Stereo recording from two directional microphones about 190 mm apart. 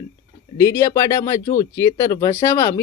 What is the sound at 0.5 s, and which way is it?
Speech, 20° left (ahead or behind).